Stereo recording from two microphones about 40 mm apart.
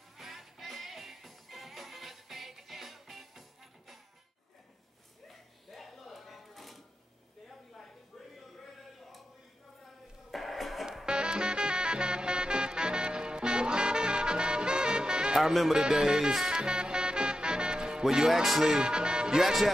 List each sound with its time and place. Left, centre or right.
0.2 s music: centre
5.3 s a sound: centre
10.3 s music: centre
11.1 s music: right
15.4 s speech: centre
15.7 s music: centre
18.1 s speech: centre
18.4 s music: centre
18.7 s speech: right
19.4 s speech: centre